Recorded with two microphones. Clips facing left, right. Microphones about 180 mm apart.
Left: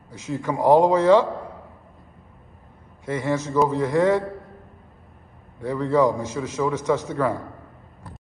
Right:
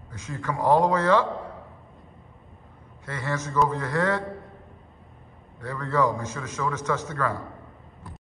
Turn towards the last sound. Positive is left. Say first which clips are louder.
# left 5 dB
turn(degrees=10)  # may be behind; listen again after turning